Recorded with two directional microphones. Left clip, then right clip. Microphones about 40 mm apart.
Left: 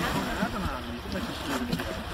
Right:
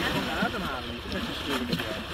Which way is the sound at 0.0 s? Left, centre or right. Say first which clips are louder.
Right 2 dB; left.